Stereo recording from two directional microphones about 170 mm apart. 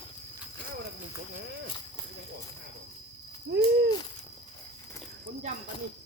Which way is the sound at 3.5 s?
75° right (ahead or behind).